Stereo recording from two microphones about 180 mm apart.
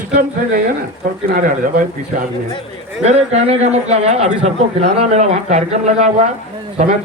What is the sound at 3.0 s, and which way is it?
A man's voice, 35° right (ahead or behind).